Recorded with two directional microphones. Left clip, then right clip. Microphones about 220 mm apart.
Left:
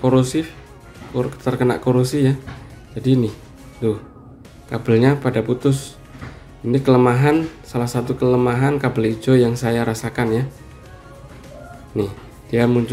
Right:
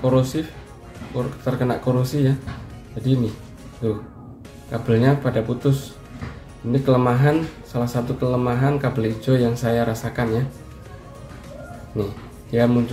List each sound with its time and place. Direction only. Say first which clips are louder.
0.0 s speech: left 3 dB; 35° left (ahead or behind)
12.0 s speech: left 4 dB; 35° left (ahead or behind)